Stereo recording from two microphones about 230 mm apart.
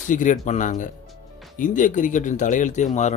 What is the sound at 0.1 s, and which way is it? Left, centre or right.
Speech, left.